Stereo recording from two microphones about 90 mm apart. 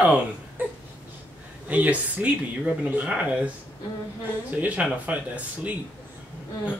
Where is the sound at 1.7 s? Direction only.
15° right (ahead or behind).